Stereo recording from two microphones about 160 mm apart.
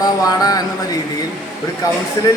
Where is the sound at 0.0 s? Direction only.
25° left (ahead or behind).